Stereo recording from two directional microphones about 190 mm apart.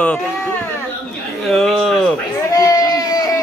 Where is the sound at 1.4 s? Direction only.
Centre (ahead or behind).